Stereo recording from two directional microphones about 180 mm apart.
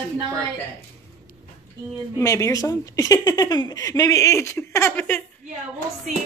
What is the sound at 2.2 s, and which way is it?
Speech, 15° left (ahead or behind).